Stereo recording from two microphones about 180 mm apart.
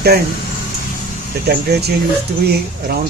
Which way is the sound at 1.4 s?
65° right (ahead or behind).